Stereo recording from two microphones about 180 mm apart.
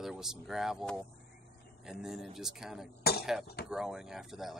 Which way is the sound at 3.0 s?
60° left (ahead or behind).